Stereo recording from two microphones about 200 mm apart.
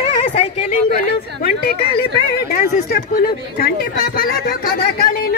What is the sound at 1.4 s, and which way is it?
Speech, 50° left (ahead or behind).